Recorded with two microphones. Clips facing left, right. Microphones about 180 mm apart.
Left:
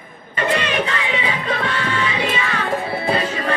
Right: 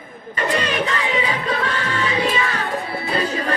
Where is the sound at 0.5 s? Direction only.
35° right (ahead or behind).